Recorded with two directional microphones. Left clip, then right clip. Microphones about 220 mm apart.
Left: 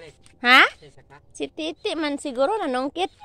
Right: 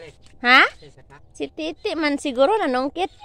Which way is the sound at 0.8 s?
20° left (ahead or behind).